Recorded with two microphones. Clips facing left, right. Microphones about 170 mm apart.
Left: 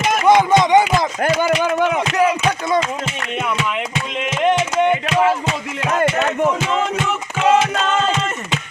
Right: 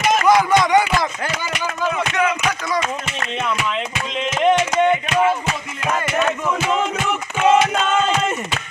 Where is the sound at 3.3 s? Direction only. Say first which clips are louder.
Left 1 dB; 10° left (ahead or behind).